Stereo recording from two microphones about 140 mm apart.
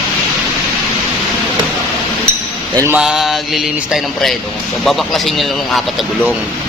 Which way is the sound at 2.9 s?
5° right (ahead or behind).